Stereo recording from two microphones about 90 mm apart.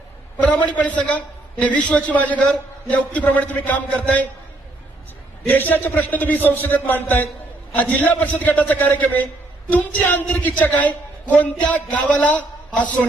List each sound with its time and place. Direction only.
0.4 s speech: 15° left (ahead or behind)
5.5 s a man's voice: 20° left (ahead or behind)